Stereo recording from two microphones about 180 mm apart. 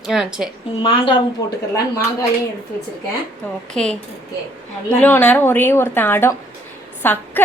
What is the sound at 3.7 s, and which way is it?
Speech, 5° left (ahead or behind).